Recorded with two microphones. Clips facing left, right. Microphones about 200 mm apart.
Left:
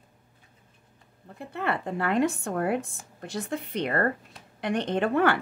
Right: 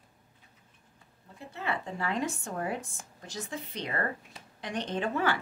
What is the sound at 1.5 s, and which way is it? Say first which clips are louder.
A woman's voice: left 5 dB; 60° left (ahead or behind).